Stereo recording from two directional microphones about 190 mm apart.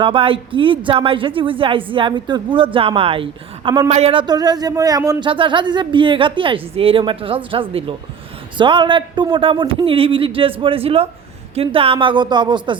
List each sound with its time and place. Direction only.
0.0 s speech: 30° right (ahead or behind)